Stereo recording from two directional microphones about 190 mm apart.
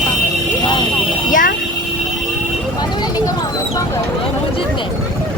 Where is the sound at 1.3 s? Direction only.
45° left (ahead or behind).